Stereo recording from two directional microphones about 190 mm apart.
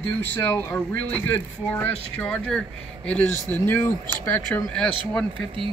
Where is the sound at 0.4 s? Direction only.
15° left (ahead or behind).